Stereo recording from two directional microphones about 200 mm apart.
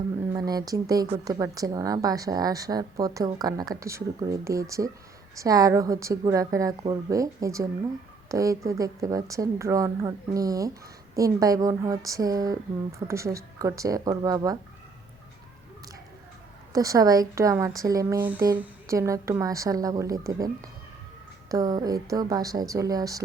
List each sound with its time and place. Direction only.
0.3 s a woman's voice: 20° right (ahead or behind)
16.7 s a woman's voice: 15° right (ahead or behind)